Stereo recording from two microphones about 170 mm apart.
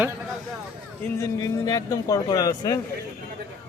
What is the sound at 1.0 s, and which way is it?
Speech, 20° left (ahead or behind).